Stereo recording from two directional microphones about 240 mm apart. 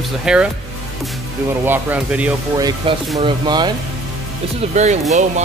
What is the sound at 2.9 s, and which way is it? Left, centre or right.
Speech, right.